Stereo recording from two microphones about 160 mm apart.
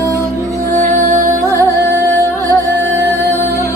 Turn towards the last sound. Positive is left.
turn(degrees=-20)  # may be behind; listen again after turning